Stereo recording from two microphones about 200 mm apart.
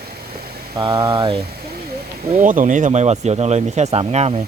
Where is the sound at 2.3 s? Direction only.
40° right (ahead or behind).